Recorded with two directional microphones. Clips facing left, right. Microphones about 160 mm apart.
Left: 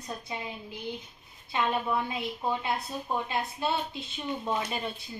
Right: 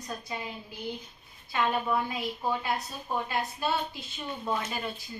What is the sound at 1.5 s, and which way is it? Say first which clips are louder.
A woman's voice: right 1 dB; 25° left (ahead or behind).